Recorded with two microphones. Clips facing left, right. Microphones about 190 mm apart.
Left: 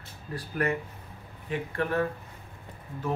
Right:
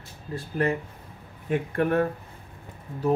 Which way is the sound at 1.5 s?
55° right (ahead or behind).